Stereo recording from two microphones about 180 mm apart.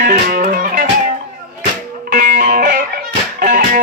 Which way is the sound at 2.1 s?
55° right (ahead or behind).